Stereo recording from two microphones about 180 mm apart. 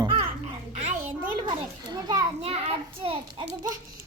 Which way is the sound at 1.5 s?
25° right (ahead or behind).